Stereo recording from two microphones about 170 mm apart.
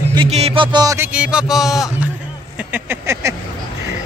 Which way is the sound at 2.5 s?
10° right (ahead or behind).